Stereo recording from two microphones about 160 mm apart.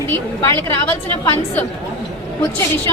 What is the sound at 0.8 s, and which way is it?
A woman's voice, 10° left (ahead or behind).